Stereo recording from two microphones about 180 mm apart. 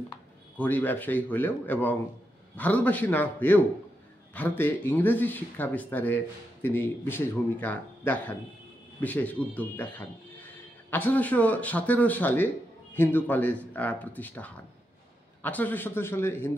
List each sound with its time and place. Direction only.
0.6 s speech: 10° left (ahead or behind)